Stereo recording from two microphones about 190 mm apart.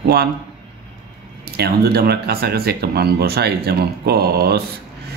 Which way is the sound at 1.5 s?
55° right (ahead or behind).